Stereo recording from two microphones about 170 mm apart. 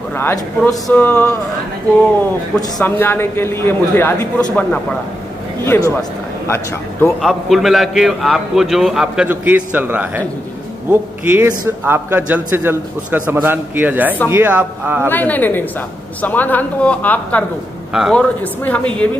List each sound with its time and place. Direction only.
0.1 s a man's voice: 10° left (ahead or behind)
2.8 s a man's voice: 15° left (ahead or behind)
7.2 s a man's voice: centre (ahead or behind)
15.0 s a man's voice: 10° left (ahead or behind)
17.9 s a man's voice: 5° right (ahead or behind)
18.4 s a man's voice: 10° left (ahead or behind)